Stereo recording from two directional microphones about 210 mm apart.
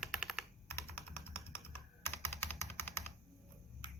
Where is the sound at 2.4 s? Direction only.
10° left (ahead or behind).